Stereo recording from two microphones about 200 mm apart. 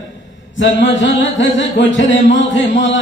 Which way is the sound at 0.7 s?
65° left (ahead or behind).